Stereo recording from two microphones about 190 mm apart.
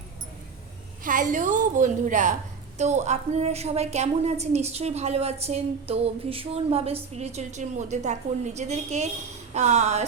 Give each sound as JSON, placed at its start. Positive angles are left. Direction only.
{"t": 1.0, "sound": "a woman's voice", "side_deg": -45}